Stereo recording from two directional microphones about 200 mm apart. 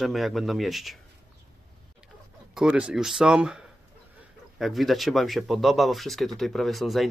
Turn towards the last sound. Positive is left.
turn(degrees=0)  # may be behind; listen again after turning